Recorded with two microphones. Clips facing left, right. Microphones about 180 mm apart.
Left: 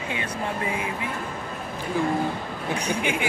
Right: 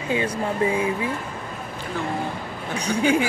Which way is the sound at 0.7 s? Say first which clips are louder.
Right 6 dB; 25° right (ahead or behind).